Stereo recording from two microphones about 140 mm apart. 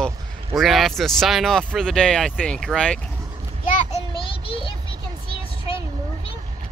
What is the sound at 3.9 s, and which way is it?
Child singing, 40° left (ahead or behind).